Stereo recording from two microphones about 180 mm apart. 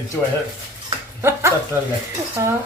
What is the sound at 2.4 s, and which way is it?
Speech, 15° right (ahead or behind).